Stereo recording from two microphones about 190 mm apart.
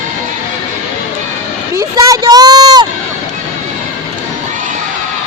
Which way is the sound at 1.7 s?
20° right (ahead or behind).